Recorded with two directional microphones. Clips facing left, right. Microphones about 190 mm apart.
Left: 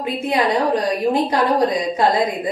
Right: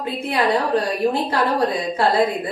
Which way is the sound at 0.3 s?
15° left (ahead or behind).